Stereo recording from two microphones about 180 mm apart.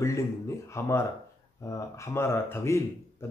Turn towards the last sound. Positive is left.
turn(degrees=15)  # may be behind; listen again after turning